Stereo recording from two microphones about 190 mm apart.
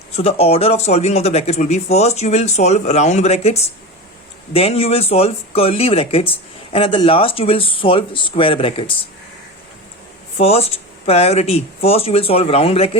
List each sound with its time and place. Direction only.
0.2 s speech: 30° left (ahead or behind)
10.3 s speech: 30° left (ahead or behind)